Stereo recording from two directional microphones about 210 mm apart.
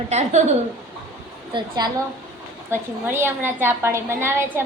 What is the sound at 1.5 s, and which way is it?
A woman's voice, 20° right (ahead or behind).